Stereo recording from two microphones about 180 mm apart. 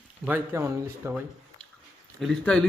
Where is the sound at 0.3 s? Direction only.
10° right (ahead or behind).